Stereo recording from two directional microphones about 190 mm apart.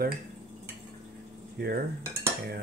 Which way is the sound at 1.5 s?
55° right (ahead or behind).